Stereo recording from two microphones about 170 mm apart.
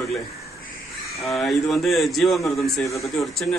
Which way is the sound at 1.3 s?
Centre (ahead or behind).